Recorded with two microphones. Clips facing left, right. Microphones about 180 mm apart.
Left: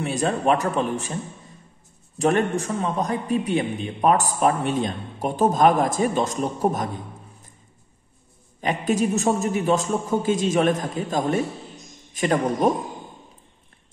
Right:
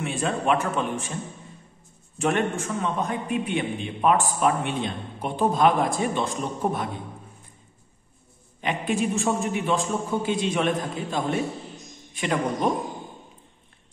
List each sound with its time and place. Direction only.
0.0 s a man's voice: 40° left (ahead or behind)
2.1 s a man's voice: 35° left (ahead or behind)
8.5 s a man's voice: 40° left (ahead or behind)